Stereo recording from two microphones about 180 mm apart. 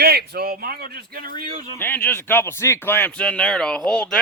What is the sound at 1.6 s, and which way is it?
Speech, 10° left (ahead or behind).